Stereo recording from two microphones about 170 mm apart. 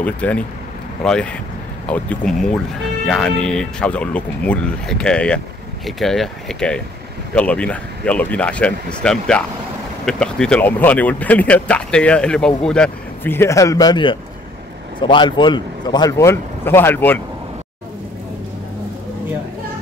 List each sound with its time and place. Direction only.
0.0 s a man's voice: 10° left (ahead or behind)